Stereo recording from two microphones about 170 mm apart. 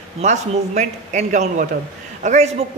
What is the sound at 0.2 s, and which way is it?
A man's voice, 45° right (ahead or behind).